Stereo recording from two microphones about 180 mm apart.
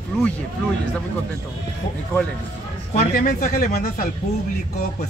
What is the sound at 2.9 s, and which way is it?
Speech, 45° left (ahead or behind).